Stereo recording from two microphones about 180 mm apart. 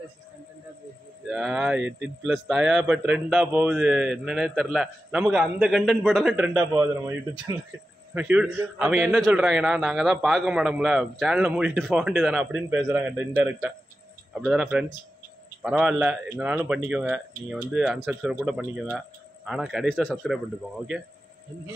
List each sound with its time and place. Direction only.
1.2 s a man's voice: 5° right (ahead or behind)